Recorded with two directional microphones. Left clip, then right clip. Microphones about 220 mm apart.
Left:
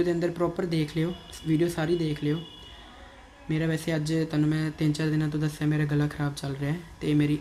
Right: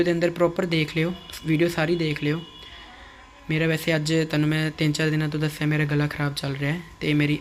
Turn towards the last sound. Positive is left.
turn(degrees=-15)  # may be behind; listen again after turning